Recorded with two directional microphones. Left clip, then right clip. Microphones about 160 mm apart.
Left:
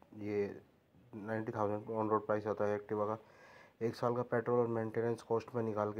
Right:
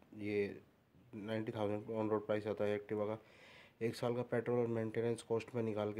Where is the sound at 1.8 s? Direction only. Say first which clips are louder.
Left 4 dB; 5° right (ahead or behind).